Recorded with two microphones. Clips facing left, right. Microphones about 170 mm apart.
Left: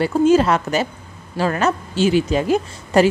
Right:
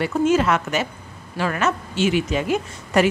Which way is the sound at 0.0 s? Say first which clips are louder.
Left 4 dB; 35° left (ahead or behind).